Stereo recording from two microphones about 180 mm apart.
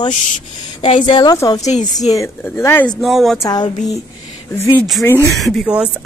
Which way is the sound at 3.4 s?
20° left (ahead or behind).